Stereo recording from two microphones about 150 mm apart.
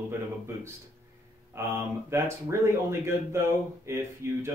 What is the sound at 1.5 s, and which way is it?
Speech, 15° right (ahead or behind).